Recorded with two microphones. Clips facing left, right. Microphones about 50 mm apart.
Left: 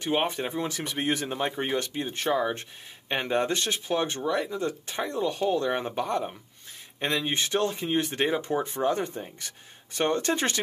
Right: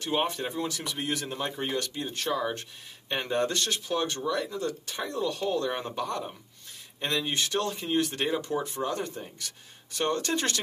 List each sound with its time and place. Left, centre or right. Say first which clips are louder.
0.0 s speech: left 2 dB; left